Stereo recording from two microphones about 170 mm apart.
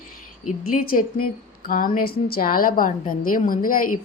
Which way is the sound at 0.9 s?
55° left (ahead or behind).